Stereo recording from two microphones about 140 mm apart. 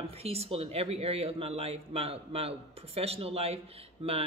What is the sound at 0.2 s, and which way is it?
Speech, 45° right (ahead or behind).